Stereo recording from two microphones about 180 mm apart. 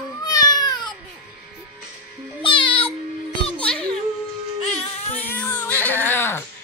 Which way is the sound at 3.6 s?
5° left (ahead or behind).